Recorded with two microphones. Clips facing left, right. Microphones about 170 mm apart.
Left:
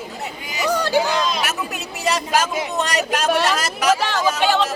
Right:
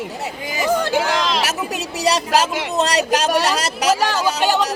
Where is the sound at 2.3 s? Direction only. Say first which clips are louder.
Right 2 dB; 80° right.